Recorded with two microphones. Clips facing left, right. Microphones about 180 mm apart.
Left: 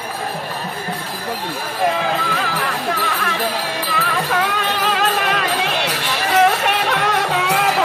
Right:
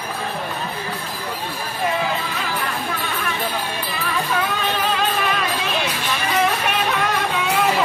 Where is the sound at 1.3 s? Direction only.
90° left.